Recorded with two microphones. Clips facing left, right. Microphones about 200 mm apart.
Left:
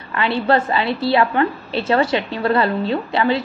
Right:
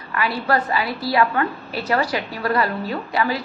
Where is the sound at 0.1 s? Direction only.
25° left (ahead or behind).